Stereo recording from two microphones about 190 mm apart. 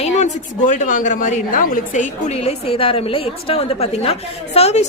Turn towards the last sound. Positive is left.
turn(degrees=35)  # may be behind; listen again after turning